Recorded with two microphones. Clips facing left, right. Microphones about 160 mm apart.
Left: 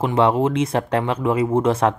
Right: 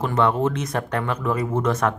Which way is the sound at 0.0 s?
30° left (ahead or behind).